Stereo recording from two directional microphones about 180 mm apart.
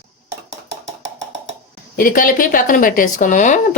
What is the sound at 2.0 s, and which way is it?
A woman's voice, 50° left (ahead or behind).